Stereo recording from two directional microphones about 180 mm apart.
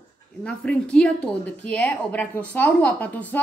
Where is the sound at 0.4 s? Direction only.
5° left (ahead or behind).